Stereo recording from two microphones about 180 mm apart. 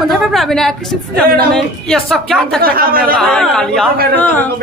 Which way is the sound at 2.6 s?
55° right (ahead or behind).